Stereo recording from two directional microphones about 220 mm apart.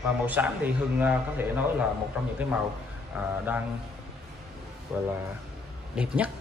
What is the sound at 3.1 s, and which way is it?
Speech, 5° right (ahead or behind).